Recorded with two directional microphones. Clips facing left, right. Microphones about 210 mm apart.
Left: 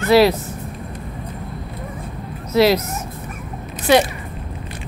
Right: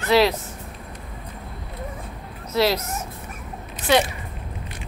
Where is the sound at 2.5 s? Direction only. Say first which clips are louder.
Left 6 dB; 10° left (ahead or behind).